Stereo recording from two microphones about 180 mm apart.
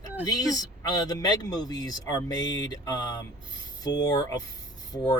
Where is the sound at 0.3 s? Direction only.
20° left (ahead or behind).